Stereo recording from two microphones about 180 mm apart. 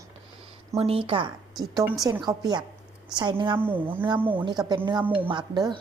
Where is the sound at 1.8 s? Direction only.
10° right (ahead or behind).